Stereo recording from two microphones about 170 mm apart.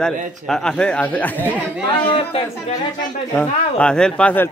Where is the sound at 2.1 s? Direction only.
35° left (ahead or behind).